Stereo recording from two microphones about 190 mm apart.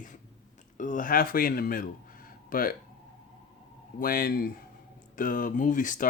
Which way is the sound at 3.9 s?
50° left (ahead or behind).